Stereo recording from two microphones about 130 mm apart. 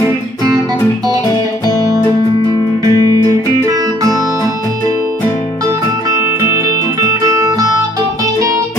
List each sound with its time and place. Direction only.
1.7 s music: 25° left (ahead or behind)
2.8 s music: 30° right (ahead or behind)
6.2 s music: 20° right (ahead or behind)